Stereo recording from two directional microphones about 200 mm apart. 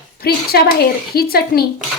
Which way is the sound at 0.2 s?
50° left (ahead or behind).